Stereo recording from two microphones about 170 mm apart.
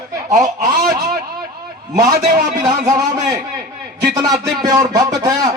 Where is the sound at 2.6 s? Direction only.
20° right (ahead or behind).